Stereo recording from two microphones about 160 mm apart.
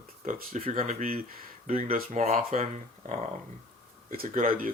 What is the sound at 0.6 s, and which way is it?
Speech, 45° right (ahead or behind).